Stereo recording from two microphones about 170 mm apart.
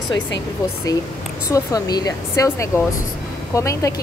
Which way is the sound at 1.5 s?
20° left (ahead or behind).